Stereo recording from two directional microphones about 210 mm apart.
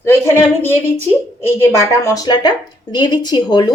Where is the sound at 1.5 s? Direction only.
15° left (ahead or behind).